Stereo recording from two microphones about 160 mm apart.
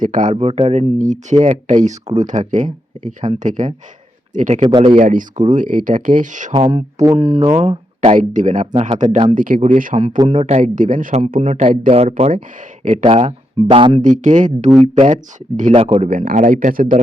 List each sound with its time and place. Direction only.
0.0 s speech: 55° right (ahead or behind)
0.3 s speech: 40° right (ahead or behind)
4.6 s speech: 30° right (ahead or behind)
4.9 s speech: 50° right (ahead or behind)
6.5 s speech: 35° right (ahead or behind)
9.3 s speech: 60° right (ahead or behind)
11.9 s speech: 40° right (ahead or behind)
14.0 s speech: 50° right (ahead or behind)
15.7 s speech: 40° right (ahead or behind)
16.0 s speech: 60° right (ahead or behind)